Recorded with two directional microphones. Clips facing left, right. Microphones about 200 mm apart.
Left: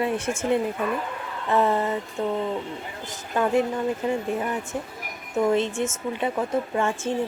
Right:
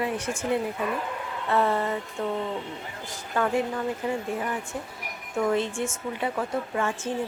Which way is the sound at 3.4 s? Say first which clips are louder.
Left 2 dB; 20° left (ahead or behind).